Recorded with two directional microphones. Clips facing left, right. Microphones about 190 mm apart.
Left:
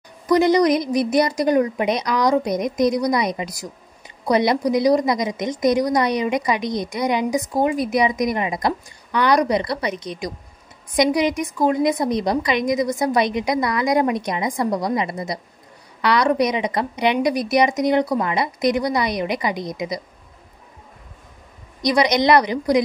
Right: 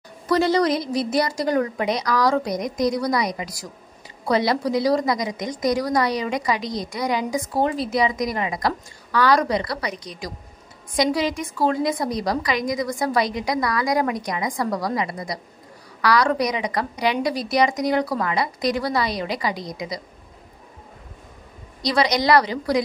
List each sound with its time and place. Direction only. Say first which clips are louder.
0.3 s a woman's voice: left 4 dB; 15° left (ahead or behind)
21.8 s a woman's voice: left 3 dB; 20° left (ahead or behind)